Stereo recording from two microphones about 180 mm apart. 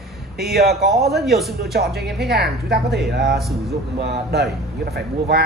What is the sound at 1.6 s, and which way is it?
Speech, 60° right (ahead or behind).